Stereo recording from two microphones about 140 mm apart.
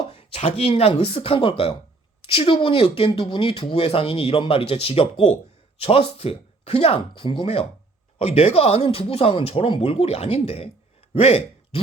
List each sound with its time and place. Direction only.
0.1 s speech: 45° left (ahead or behind)